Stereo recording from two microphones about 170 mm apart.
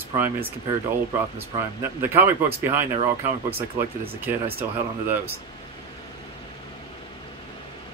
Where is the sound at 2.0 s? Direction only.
10° right (ahead or behind).